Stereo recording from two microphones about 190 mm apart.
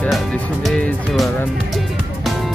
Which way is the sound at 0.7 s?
Centre (ahead or behind).